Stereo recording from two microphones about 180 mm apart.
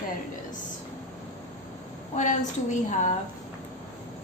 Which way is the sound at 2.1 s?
45° left (ahead or behind).